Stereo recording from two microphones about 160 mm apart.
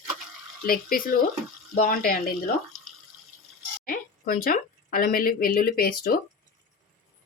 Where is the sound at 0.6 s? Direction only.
65° left (ahead or behind).